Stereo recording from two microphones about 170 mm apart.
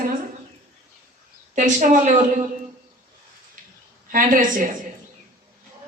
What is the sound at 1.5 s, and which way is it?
Speech, 50° right (ahead or behind).